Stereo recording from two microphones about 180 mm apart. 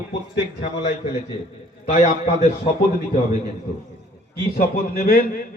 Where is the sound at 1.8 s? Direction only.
40° left (ahead or behind).